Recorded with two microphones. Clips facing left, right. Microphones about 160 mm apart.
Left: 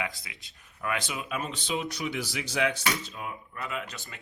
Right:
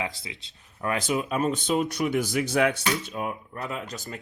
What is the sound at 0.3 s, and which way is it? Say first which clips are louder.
Speech: right 7 dB; 25° right (ahead or behind).